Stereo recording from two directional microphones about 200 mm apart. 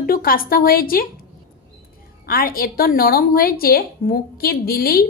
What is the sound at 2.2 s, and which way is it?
A woman's voice, 45° left (ahead or behind).